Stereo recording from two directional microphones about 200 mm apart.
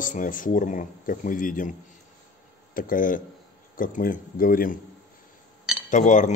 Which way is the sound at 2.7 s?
45° left (ahead or behind).